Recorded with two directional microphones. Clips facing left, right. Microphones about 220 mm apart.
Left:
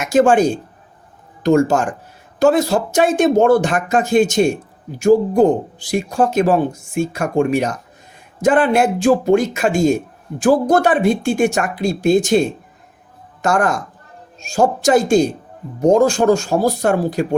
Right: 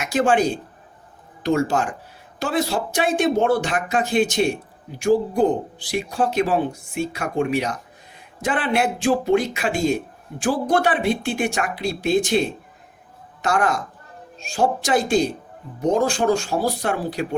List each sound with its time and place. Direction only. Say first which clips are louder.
0.0 s speech: left 6 dB; 45° left (ahead or behind)